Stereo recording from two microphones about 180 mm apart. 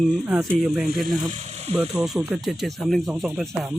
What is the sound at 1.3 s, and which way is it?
Electric toothbrush, 40° right (ahead or behind).